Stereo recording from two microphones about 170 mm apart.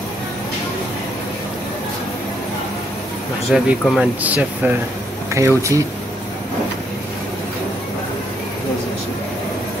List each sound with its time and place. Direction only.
3.5 s speech: 5° right (ahead or behind)